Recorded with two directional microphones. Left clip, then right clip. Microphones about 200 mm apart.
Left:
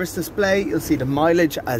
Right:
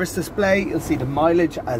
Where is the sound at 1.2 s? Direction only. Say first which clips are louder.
Even; 50° left (ahead or behind).